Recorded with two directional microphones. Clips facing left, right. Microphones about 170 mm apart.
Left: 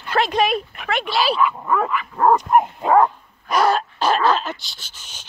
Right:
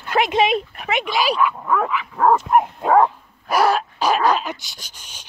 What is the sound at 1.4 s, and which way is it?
Dog, centre (ahead or behind).